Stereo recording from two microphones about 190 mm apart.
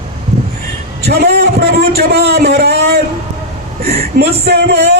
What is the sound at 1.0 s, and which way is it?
A man's voice, 60° right (ahead or behind).